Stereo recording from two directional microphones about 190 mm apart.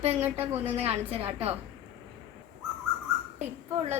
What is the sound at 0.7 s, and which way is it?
Speech, 35° right (ahead or behind).